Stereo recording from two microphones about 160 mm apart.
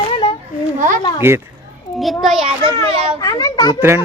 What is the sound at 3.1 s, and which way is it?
Speech, 20° left (ahead or behind).